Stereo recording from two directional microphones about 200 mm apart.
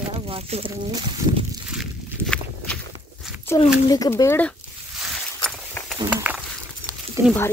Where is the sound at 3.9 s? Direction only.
15° left (ahead or behind).